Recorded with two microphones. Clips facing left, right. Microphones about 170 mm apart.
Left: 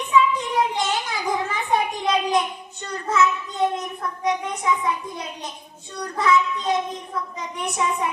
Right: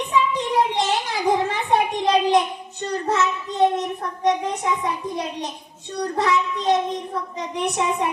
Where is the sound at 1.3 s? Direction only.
30° right (ahead or behind).